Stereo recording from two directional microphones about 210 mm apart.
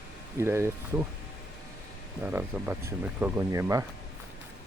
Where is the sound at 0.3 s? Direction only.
10° right (ahead or behind).